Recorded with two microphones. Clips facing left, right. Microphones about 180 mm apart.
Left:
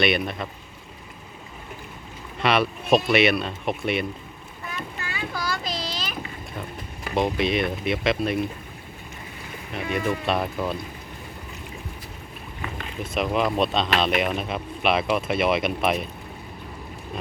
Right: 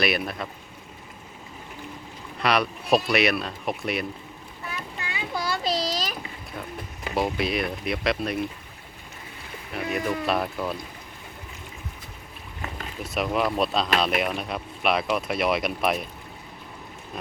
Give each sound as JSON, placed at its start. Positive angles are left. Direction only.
{"t": 0.0, "sound": "speech", "side_deg": 0}
{"t": 2.4, "sound": "speech", "side_deg": 0}
{"t": 5.0, "sound": "a sound", "side_deg": -20}
{"t": 7.1, "sound": "speech", "side_deg": -5}
{"t": 9.7, "sound": "speech", "side_deg": 0}
{"t": 13.0, "sound": "speech", "side_deg": 0}